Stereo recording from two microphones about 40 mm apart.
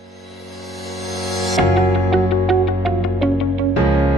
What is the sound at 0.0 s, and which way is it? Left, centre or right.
Music, centre.